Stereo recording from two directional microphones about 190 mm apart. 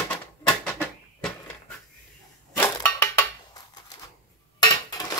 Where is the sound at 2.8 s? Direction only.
15° left (ahead or behind).